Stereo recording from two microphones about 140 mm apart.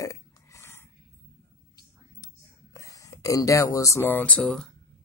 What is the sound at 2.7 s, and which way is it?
Speech, 25° left (ahead or behind).